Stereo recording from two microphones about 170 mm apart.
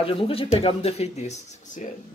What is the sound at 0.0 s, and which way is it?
Speech, 35° left (ahead or behind).